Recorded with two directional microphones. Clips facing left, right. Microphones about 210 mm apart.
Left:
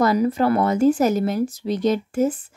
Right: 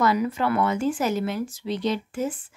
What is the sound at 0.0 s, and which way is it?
A woman's voice, 40° left (ahead or behind).